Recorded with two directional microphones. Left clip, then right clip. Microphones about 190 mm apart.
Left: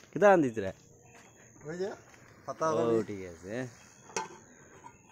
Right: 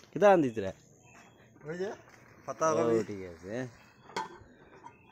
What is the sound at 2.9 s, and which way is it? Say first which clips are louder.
Speech: even; centre (ahead or behind).